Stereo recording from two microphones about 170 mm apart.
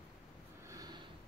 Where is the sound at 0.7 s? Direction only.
25° right (ahead or behind).